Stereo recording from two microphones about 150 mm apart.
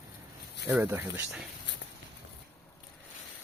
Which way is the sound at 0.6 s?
15° right (ahead or behind).